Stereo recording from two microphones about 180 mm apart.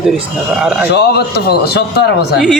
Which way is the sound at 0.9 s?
60° left (ahead or behind).